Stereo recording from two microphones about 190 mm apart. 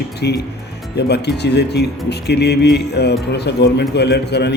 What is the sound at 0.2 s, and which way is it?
Speech, 60° left (ahead or behind).